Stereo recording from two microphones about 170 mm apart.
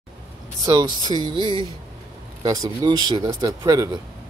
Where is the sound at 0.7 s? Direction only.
25° right (ahead or behind).